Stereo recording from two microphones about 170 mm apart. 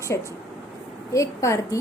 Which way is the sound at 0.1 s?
15° left (ahead or behind).